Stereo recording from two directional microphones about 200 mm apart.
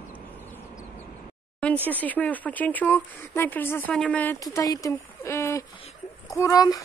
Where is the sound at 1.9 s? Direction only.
10° left (ahead or behind).